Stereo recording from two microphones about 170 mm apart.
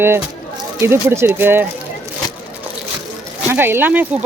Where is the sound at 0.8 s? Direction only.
15° right (ahead or behind).